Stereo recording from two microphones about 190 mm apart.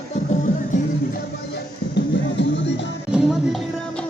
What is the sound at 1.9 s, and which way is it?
Music, 65° left (ahead or behind).